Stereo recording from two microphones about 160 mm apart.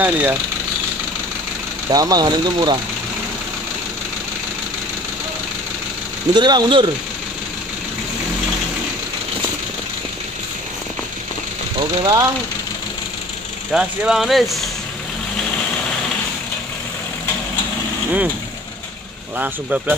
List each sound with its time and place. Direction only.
0.0 s speech: 10° right (ahead or behind)
1.9 s speech: 25° right (ahead or behind)
6.3 s speech: 30° right (ahead or behind)
11.8 s speech: 25° right (ahead or behind)
13.7 s speech: 5° right (ahead or behind)
19.3 s speech: 10° right (ahead or behind)